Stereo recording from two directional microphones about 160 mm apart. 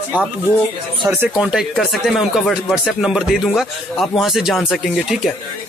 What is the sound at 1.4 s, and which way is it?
Speech, 5° right (ahead or behind).